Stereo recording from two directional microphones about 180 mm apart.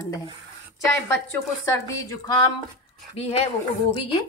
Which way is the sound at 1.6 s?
20° left (ahead or behind).